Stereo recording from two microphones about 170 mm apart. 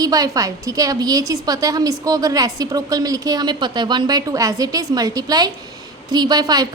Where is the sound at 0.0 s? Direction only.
20° right (ahead or behind).